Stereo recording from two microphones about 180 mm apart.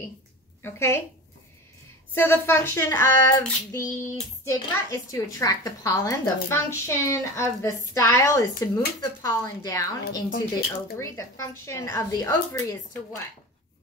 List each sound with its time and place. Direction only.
0.6 s a woman's voice: 15° left (ahead or behind)
2.1 s a child's voice: 10° left (ahead or behind)